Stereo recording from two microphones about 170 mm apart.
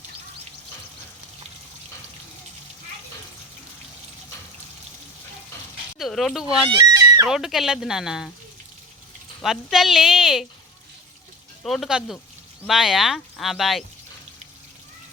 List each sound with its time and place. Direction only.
6.0 s speech: centre (ahead or behind)
6.7 s goat: 20° right (ahead or behind)
7.3 s speech: centre (ahead or behind)
9.4 s speech: centre (ahead or behind)
11.6 s speech: centre (ahead or behind)